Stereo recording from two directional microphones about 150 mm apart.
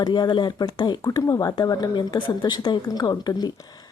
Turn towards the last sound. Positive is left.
turn(degrees=30)  # may be behind; listen again after turning